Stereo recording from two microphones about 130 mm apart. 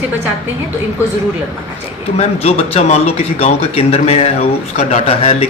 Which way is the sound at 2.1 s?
50° left (ahead or behind).